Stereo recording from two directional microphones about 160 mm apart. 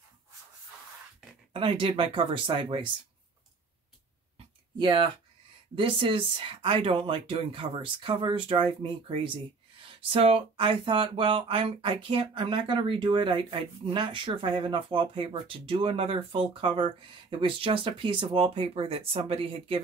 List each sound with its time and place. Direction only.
1.5 s speech: 35° right (ahead or behind)
4.7 s speech: 30° right (ahead or behind)
9.8 s speech: 35° right (ahead or behind)